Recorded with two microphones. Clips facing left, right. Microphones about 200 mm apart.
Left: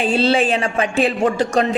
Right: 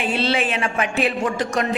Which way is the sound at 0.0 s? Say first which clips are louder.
Left 5 dB; 30° left (ahead or behind).